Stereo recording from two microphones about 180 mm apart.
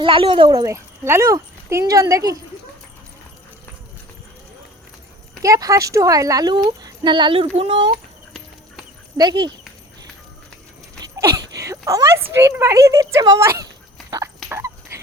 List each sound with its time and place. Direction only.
0.0 s speech: 30° right (ahead or behind)
5.4 s speech: 20° right (ahead or behind)
9.1 s speech: 25° right (ahead or behind)
11.0 s a sound: 20° right (ahead or behind)
12.3 s a child's voice: 15° right (ahead or behind)
14.5 s a sound: 15° right (ahead or behind)